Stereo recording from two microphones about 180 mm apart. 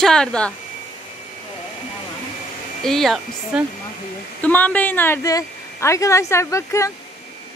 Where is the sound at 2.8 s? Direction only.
Centre (ahead or behind).